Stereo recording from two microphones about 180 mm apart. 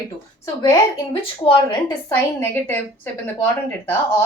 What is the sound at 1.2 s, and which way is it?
Speech, 30° left (ahead or behind).